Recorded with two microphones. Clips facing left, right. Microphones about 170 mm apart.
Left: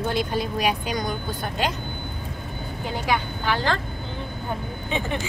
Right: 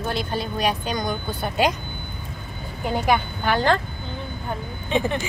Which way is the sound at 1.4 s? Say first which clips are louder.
Right 7 dB; 10° right (ahead or behind).